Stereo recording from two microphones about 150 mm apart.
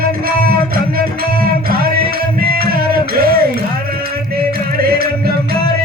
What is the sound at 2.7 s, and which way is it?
Music, 85° right.